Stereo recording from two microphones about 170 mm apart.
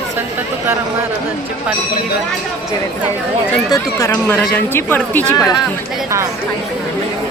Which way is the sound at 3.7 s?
15° left (ahead or behind).